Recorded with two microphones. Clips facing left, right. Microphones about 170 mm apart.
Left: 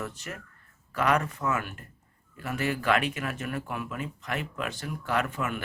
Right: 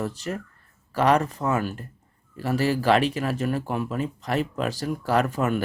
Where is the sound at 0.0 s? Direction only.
35° right (ahead or behind).